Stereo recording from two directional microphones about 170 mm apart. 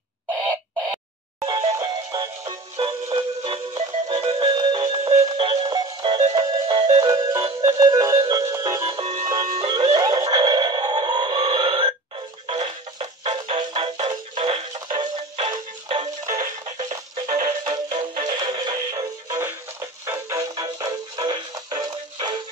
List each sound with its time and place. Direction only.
1.4 s music: 30° right (ahead or behind)
8.9 s music: 40° right (ahead or behind)
16.6 s music: 45° right (ahead or behind)
17.3 s music: 20° right (ahead or behind)
17.6 s music: 35° right (ahead or behind)